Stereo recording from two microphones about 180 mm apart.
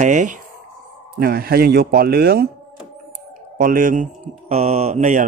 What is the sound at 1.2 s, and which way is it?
Speech, 60° right (ahead or behind).